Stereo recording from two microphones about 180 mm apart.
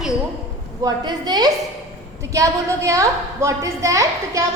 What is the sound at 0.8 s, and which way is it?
A woman's voice, 20° right (ahead or behind).